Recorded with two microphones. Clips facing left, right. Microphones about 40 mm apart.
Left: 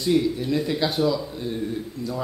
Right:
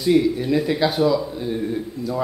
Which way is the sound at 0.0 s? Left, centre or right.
Centre.